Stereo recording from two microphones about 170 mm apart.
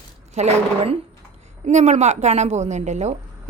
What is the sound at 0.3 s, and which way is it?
A woman's voice, 40° right (ahead or behind).